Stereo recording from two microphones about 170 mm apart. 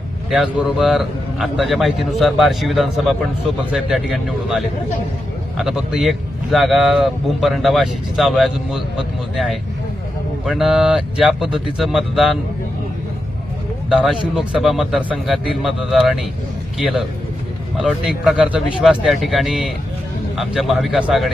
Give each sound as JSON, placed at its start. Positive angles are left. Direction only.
{"t": 0.3, "sound": "a man's voice", "side_deg": -5}
{"t": 13.9, "sound": "a man's voice", "side_deg": 0}